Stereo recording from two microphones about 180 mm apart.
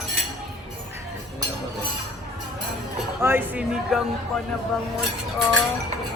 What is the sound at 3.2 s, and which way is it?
Speech, 10° right (ahead or behind).